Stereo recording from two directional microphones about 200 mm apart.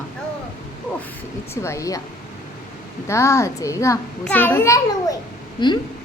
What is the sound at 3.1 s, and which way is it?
A child's voice, 15° left (ahead or behind).